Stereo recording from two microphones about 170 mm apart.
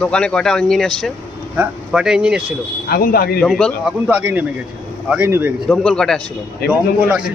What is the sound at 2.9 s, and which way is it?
Speech, 60° left (ahead or behind).